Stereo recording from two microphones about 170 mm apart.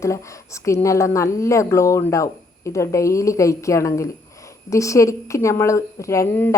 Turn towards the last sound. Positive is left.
turn(degrees=10)  # may be behind; listen again after turning